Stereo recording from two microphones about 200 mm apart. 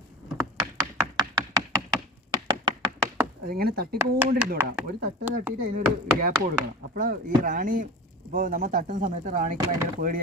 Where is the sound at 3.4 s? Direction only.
50° right (ahead or behind).